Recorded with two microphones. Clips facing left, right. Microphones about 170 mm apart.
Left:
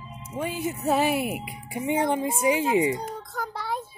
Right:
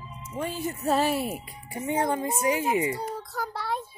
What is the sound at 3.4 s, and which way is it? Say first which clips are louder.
Child singing: left 1 dB; centre (ahead or behind).